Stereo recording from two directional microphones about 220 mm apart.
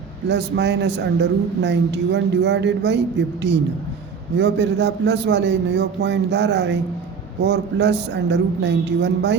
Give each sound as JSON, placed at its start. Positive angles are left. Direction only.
{"t": 0.3, "sound": "a man's voice", "side_deg": -50}